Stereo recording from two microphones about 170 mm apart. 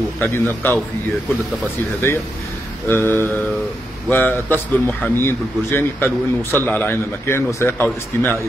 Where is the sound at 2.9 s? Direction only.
15° left (ahead or behind).